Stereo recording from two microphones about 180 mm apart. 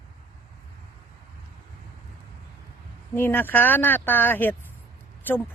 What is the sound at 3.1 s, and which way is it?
Speech, 10° left (ahead or behind).